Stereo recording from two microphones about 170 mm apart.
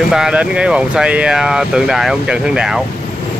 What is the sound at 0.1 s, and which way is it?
Speech, 5° right (ahead or behind).